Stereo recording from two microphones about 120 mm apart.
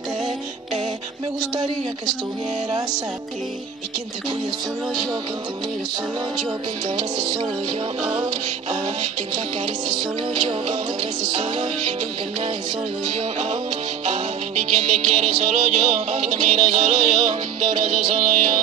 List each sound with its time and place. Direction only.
8.0 s music: 40° right (ahead or behind)
8.6 s music: 65° right (ahead or behind)
13.0 s music: 65° right (ahead or behind); by 18.6 s 90° right